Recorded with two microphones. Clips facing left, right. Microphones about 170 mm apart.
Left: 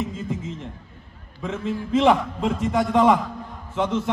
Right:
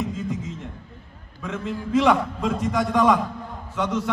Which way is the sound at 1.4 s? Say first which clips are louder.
Left 2 dB; 20° left (ahead or behind).